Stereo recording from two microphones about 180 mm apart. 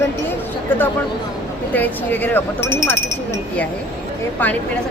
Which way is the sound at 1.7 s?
10° left (ahead or behind).